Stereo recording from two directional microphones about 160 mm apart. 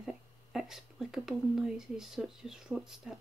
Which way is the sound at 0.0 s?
5° right (ahead or behind).